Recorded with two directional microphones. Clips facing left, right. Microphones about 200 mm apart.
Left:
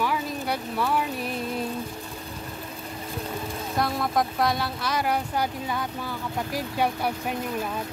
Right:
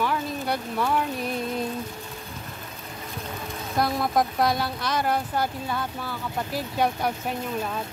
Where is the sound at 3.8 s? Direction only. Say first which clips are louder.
Right 2 dB; centre (ahead or behind).